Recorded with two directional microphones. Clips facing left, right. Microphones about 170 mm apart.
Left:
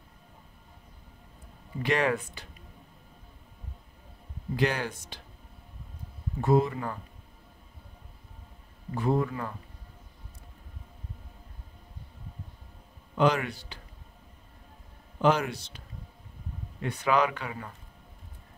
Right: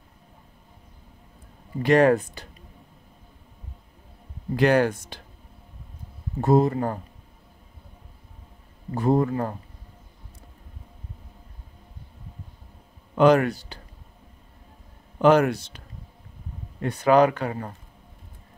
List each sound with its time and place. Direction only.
1.8 s speech: 45° right (ahead or behind)
4.6 s speech: 55° right (ahead or behind)
6.4 s speech: 40° right (ahead or behind)
8.9 s speech: 40° right (ahead or behind)
13.1 s speech: 50° right (ahead or behind)
15.1 s a man's voice: 55° right (ahead or behind)
16.8 s speech: 40° right (ahead or behind)